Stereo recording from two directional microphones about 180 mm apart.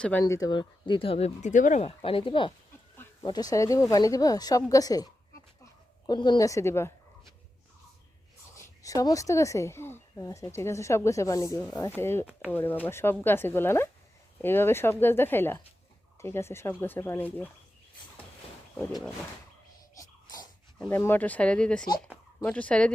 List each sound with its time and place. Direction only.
0.0 s speech: 15° left (ahead or behind)
6.1 s speech: 25° left (ahead or behind)
8.5 s speech: 20° left (ahead or behind)
18.8 s speech: centre (ahead or behind)
20.0 s sneeze: 20° left (ahead or behind)
20.7 s speech: 10° left (ahead or behind)